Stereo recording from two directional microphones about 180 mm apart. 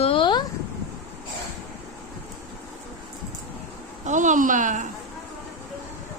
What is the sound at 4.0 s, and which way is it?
Speech, 45° right (ahead or behind).